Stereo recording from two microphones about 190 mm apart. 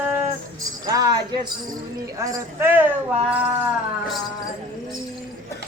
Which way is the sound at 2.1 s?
15° right (ahead or behind).